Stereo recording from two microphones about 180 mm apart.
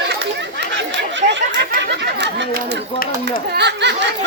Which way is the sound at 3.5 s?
70° right (ahead or behind).